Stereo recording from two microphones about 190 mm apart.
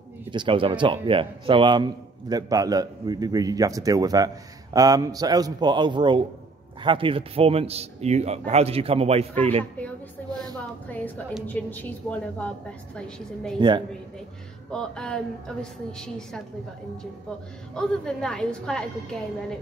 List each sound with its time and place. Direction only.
0.3 s a man's voice: 25° right (ahead or behind)
11.4 s a woman's voice: 10° left (ahead or behind)
13.6 s a man's voice: 25° right (ahead or behind)
14.7 s a woman's voice: 5° left (ahead or behind)
17.7 s a woman's voice: 5° left (ahead or behind)